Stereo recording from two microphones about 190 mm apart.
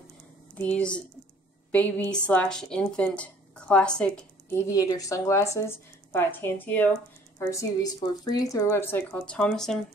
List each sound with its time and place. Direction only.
0.6 s a woman's voice: 5° left (ahead or behind)